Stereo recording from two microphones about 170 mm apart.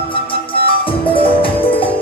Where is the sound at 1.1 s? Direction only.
30° left (ahead or behind).